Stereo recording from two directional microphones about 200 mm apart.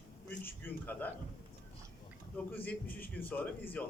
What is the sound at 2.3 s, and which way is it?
A man's voice, 10° left (ahead or behind).